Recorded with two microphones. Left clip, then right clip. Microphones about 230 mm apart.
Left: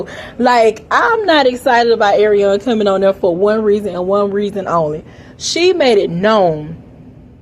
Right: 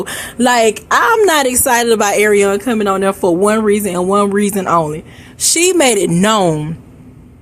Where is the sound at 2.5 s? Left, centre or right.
Centre.